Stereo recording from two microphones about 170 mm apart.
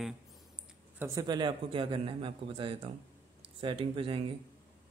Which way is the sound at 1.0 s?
20° right (ahead or behind).